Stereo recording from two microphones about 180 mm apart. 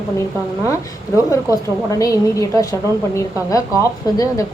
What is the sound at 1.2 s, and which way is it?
A woman's voice, 20° left (ahead or behind).